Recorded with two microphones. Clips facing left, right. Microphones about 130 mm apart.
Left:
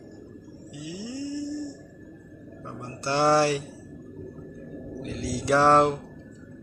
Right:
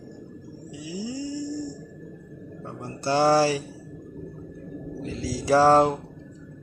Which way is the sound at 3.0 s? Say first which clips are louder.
Right 2 dB; 35° right (ahead or behind).